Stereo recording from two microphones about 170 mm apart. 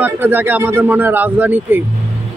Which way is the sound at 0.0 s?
10° right (ahead or behind).